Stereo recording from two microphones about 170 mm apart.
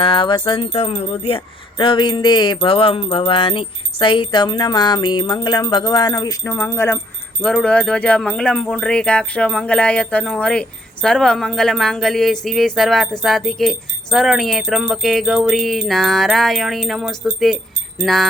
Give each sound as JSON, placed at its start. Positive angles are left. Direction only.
{"t": 0.0, "sound": "jingle bell", "side_deg": 30}
{"t": 6.5, "sound": "speech", "side_deg": 10}
{"t": 7.4, "sound": "a sound", "side_deg": 5}